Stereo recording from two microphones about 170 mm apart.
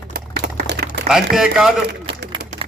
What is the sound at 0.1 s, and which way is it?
Typewriter, 70° right (ahead or behind).